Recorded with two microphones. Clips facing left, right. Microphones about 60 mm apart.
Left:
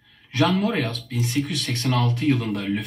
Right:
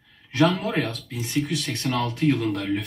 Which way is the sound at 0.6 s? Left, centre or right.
Left.